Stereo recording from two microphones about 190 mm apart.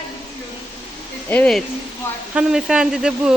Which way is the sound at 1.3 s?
5° left (ahead or behind).